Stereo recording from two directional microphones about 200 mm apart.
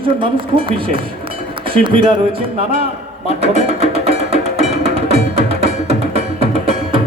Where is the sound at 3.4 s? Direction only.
30° right (ahead or behind).